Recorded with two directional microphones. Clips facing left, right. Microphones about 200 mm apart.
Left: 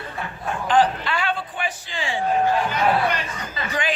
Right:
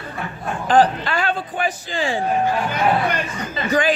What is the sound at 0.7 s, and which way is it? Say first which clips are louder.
A man's voice: right 3 dB; 40° right (ahead or behind).